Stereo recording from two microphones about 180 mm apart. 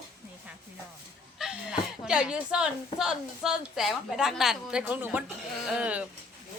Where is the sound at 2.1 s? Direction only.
5° right (ahead or behind).